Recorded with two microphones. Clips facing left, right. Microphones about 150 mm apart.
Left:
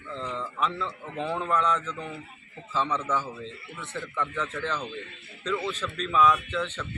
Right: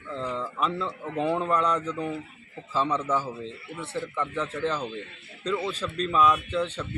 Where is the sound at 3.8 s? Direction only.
30° right (ahead or behind).